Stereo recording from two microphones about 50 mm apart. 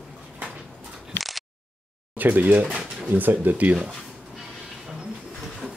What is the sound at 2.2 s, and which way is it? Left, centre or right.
Speech, right.